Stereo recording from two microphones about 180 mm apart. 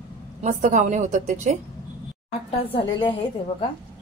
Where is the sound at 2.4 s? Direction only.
30° left (ahead or behind).